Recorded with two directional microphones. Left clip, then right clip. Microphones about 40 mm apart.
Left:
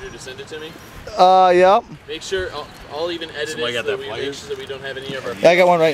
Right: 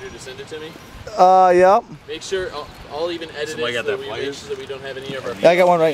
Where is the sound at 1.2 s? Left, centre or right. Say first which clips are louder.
Even; centre.